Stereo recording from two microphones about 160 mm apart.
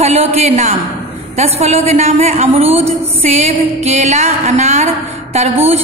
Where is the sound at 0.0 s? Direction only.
40° right (ahead or behind).